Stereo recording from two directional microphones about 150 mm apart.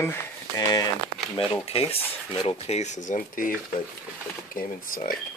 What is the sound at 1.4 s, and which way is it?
Speech, 40° left (ahead or behind).